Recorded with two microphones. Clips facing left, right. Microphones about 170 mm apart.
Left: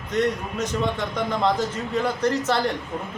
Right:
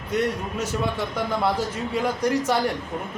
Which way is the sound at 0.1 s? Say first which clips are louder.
Left 1 dB; 10° right (ahead or behind).